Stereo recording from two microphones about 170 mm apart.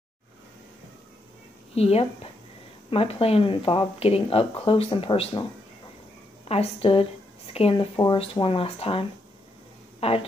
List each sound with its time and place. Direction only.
1.8 s speech: 35° left (ahead or behind)
6.5 s a woman's voice: 35° left (ahead or behind)